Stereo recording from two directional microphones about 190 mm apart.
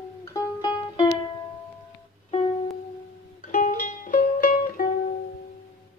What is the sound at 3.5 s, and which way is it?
Music, 45° left (ahead or behind).